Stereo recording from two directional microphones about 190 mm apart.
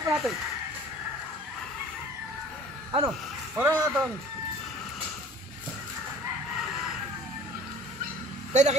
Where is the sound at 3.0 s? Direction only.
10° right (ahead or behind).